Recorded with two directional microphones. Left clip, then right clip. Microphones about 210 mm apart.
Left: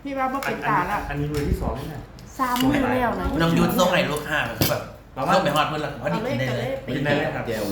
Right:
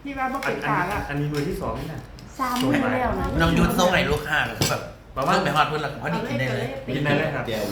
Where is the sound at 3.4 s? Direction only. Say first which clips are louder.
Even; 5° left (ahead or behind).